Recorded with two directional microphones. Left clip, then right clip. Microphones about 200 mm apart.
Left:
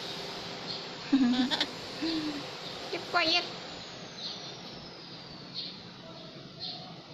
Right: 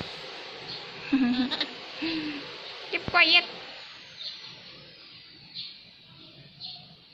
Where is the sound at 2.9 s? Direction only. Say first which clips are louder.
Right 7 dB; 10° right (ahead or behind).